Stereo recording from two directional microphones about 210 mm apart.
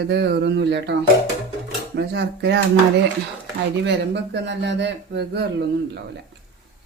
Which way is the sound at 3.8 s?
55° right (ahead or behind).